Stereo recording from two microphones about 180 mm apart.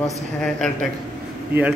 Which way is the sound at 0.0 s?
Centre (ahead or behind).